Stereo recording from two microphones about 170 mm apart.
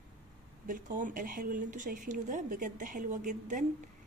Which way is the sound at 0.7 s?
50° right (ahead or behind).